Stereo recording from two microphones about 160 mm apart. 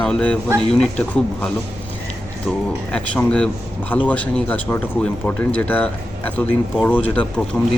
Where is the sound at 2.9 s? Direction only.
5° left (ahead or behind).